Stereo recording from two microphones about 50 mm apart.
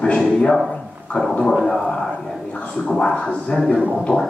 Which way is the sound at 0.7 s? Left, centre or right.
Centre.